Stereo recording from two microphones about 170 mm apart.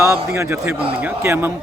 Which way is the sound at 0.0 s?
15° right (ahead or behind).